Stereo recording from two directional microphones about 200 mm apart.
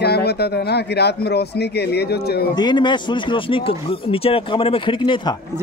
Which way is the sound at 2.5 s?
20° left (ahead or behind).